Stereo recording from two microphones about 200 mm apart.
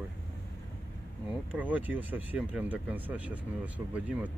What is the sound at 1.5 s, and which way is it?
Speech, 10° right (ahead or behind).